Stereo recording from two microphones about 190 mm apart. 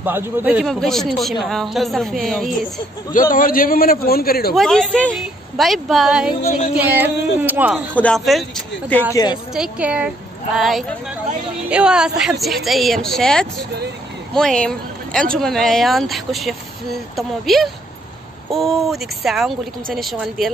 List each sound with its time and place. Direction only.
0.0 s speech: 10° right (ahead or behind)
3.1 s a man's voice: 45° left (ahead or behind)
4.6 s speech: centre (ahead or behind)
7.9 s speech: 5° left (ahead or behind)
9.1 s a woman's voice: 20° left (ahead or behind)
9.5 s speech: 5° right (ahead or behind)